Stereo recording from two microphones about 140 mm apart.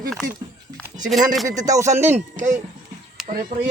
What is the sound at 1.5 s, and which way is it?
Speech, 25° right (ahead or behind).